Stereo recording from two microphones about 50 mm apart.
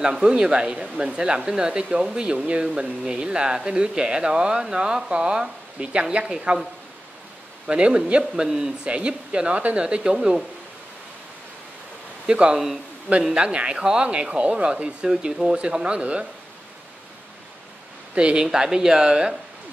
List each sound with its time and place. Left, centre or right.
0.0 s speech: centre
7.6 s speech: centre
12.3 s speech: centre
18.1 s speech: centre